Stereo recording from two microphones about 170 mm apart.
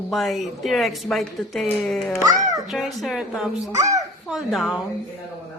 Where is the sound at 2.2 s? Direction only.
20° right (ahead or behind).